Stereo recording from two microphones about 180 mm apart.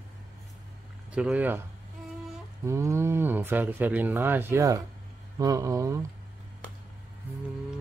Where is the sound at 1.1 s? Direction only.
5° right (ahead or behind).